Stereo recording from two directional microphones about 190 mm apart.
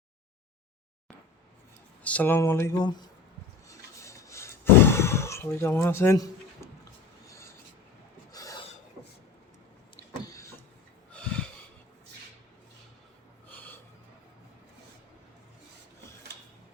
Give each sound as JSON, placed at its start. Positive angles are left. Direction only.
{"t": 2.0, "sound": "speech", "side_deg": 10}
{"t": 3.7, "sound": "a sound", "side_deg": 15}
{"t": 8.3, "sound": "filing", "side_deg": 20}
{"t": 11.1, "sound": "snort", "side_deg": 5}
{"t": 13.5, "sound": "snort", "side_deg": 10}